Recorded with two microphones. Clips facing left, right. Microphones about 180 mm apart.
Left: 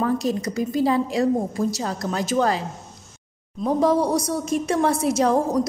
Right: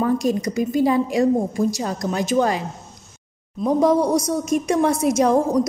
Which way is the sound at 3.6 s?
15° right (ahead or behind).